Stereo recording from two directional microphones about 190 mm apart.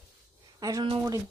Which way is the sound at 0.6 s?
20° right (ahead or behind).